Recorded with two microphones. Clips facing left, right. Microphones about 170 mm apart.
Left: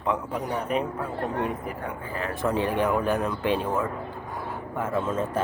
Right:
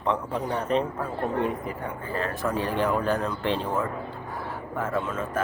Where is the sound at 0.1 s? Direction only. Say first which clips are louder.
Right 1 dB; 10° left (ahead or behind).